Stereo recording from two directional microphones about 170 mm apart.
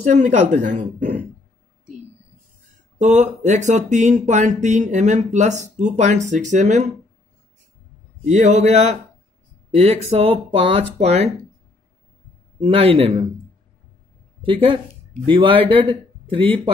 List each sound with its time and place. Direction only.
0.1 s speech: 45° right (ahead or behind)
3.0 s speech: 45° right (ahead or behind)
8.3 s speech: 40° right (ahead or behind)
12.5 s speech: 35° right (ahead or behind)
14.4 s speech: 30° right (ahead or behind)